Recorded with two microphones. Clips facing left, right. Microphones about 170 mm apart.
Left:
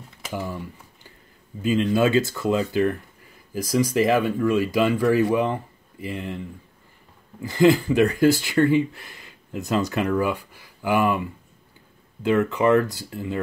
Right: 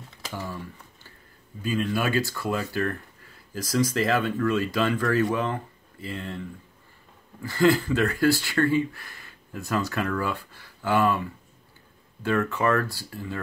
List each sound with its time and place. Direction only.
0.3 s speech: 15° left (ahead or behind)
1.6 s speech: 20° left (ahead or behind)
7.4 s speech: 15° left (ahead or behind)